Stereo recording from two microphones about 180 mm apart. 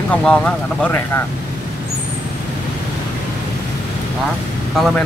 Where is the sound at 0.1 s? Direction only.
5° left (ahead or behind).